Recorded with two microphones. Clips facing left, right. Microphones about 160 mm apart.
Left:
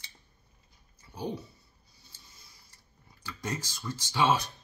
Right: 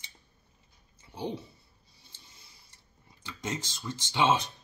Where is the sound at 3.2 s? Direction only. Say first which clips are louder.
Even; 20° right (ahead or behind).